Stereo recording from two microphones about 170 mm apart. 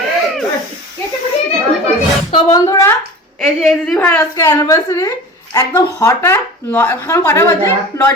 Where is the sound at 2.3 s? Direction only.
20° left (ahead or behind).